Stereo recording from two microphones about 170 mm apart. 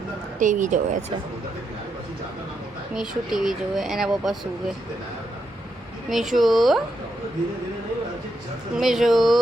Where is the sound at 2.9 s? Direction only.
Centre (ahead or behind).